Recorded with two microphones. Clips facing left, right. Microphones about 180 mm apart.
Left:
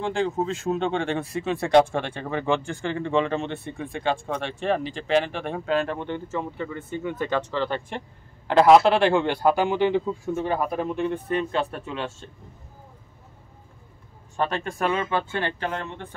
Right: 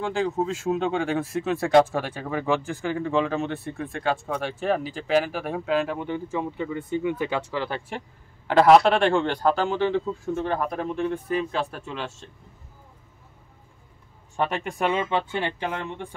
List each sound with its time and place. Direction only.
0.0 s speech: centre (ahead or behind)
14.3 s speech: 15° right (ahead or behind)